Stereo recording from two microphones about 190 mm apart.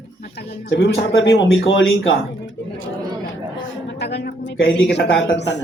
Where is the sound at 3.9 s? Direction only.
65° left (ahead or behind).